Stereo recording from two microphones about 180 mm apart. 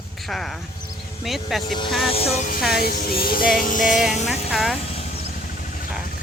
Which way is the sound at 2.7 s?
60° left (ahead or behind).